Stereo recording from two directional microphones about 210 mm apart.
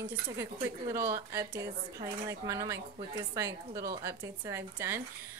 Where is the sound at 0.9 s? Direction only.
10° right (ahead or behind).